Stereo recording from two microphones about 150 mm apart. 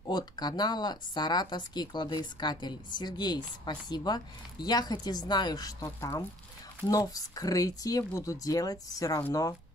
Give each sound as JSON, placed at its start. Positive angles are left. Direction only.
{"t": 0.1, "sound": "speech", "side_deg": 25}